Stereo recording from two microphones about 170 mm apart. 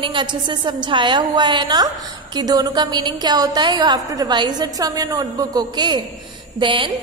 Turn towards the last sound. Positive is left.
turn(degrees=-30)  # may be behind; listen again after turning